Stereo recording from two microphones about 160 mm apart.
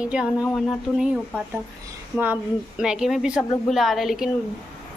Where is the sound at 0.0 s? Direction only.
5° right (ahead or behind).